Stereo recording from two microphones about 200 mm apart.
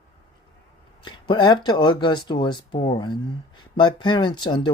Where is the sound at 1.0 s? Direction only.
25° left (ahead or behind).